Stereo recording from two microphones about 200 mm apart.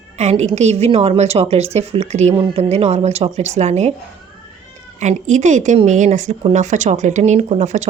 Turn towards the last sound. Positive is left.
turn(degrees=-35)  # may be behind; listen again after turning